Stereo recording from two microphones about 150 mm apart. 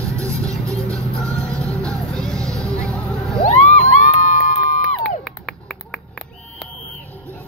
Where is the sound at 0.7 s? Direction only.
20° right (ahead or behind).